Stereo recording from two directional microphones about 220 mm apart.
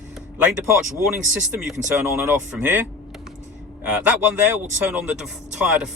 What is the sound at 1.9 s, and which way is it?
Speech, 5° right (ahead or behind).